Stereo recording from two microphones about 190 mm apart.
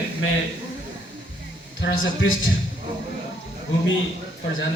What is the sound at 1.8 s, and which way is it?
Speech, 85° left.